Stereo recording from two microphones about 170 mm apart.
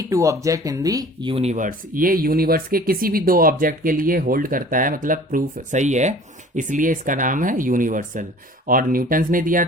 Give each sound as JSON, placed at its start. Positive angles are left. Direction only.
{"t": 0.1, "sound": "speech", "side_deg": -20}
{"t": 1.5, "sound": "speech", "side_deg": -50}